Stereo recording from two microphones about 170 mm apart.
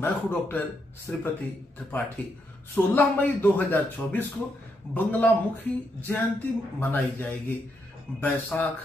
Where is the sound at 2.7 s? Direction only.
10° left (ahead or behind).